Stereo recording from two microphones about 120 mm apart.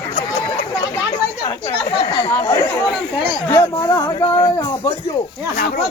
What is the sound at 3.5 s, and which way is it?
Speech, 25° left (ahead or behind).